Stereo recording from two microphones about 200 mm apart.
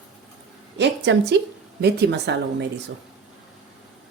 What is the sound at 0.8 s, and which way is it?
Speech, 60° right (ahead or behind).